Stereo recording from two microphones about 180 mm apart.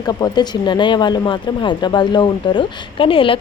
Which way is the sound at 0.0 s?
25° left (ahead or behind).